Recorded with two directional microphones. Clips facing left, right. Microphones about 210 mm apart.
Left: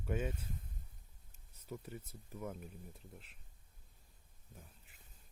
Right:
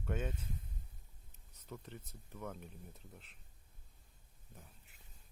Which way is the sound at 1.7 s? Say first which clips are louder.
Left 3 dB; 5° left (ahead or behind).